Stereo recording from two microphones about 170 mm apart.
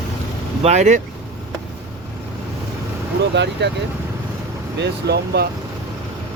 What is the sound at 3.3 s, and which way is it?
Speech, 90° right.